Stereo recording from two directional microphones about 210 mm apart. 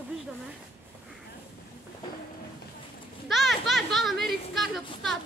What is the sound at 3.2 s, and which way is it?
Speech, centre (ahead or behind).